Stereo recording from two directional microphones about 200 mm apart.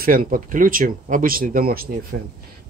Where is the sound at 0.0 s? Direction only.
45° right (ahead or behind).